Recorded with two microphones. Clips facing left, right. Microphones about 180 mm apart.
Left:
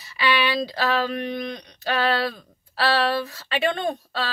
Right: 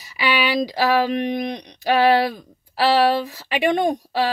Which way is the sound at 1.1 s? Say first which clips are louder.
Right 5 dB; 15° right (ahead or behind).